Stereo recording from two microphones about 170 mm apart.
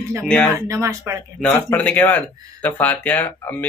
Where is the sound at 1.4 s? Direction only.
10° left (ahead or behind).